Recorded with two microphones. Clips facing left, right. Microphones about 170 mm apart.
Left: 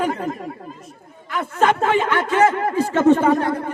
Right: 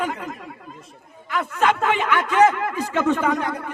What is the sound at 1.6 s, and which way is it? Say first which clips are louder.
A man's voice: left 3 dB; 35° left (ahead or behind).